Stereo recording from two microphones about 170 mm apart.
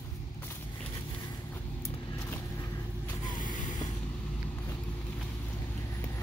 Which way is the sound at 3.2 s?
50° left (ahead or behind).